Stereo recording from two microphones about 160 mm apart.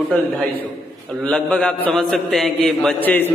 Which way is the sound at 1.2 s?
5° left (ahead or behind).